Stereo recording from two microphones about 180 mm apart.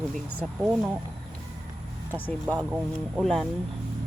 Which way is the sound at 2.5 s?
5° right (ahead or behind).